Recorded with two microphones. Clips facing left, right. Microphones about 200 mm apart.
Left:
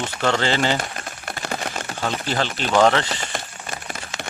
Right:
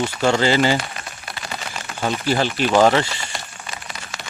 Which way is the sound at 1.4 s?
55° left (ahead or behind).